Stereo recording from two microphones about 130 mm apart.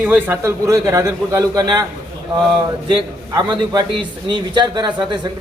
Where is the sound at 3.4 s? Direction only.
35° right (ahead or behind).